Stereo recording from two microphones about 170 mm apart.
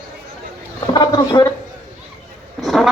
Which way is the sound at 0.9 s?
25° left (ahead or behind).